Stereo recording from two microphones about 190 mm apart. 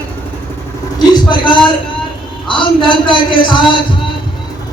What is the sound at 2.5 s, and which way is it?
Speech, 25° left (ahead or behind).